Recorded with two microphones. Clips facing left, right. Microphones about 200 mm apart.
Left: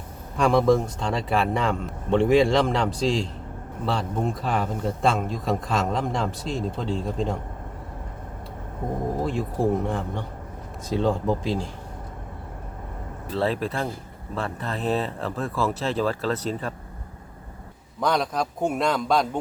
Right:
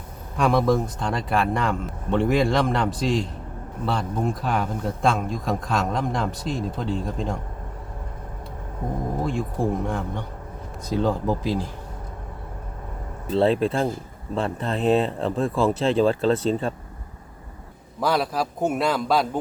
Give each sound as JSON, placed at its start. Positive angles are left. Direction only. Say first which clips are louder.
{"t": 0.3, "sound": "speech", "louder": "left 1 dB", "side_deg": 0}
{"t": 9.2, "sound": "speech", "louder": "left 1 dB", "side_deg": 0}
{"t": 13.3, "sound": "speech", "louder": "right 5 dB", "side_deg": -25}
{"t": 18.0, "sound": "speech", "louder": "right 1 dB", "side_deg": -5}